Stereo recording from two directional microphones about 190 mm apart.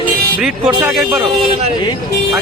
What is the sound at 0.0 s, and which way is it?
Speech, 5° right (ahead or behind).